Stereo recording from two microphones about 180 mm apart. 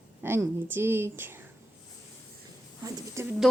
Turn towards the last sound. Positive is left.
turn(degrees=-15)  # may be behind; listen again after turning